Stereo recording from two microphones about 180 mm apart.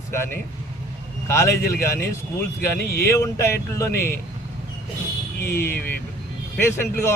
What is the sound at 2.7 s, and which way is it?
Speech, 60° left (ahead or behind).